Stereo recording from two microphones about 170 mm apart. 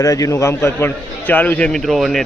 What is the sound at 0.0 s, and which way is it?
Speech, 20° left (ahead or behind).